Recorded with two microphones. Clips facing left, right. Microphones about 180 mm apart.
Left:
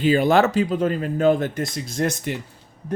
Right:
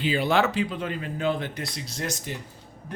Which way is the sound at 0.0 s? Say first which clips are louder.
Left 6 dB; 45° left (ahead or behind).